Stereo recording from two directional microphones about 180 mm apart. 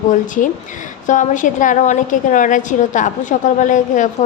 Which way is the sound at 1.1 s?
45° left (ahead or behind).